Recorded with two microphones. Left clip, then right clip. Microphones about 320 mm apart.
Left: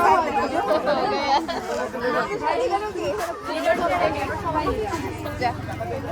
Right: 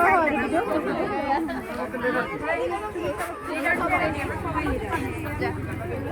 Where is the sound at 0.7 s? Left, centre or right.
Centre.